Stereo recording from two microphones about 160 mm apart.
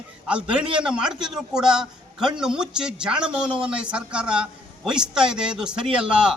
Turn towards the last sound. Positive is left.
turn(degrees=-5)  # may be behind; listen again after turning